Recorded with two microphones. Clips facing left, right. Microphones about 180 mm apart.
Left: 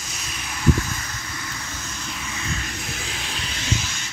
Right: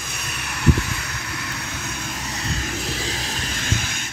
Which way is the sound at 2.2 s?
35° right (ahead or behind).